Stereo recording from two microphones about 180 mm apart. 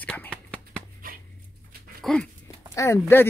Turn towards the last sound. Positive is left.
turn(degrees=15)  # may be behind; listen again after turning